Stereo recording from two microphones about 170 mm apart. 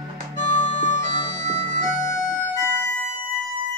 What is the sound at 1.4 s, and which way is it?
Music, 45° right (ahead or behind).